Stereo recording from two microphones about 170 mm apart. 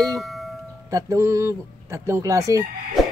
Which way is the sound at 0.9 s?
20° right (ahead or behind).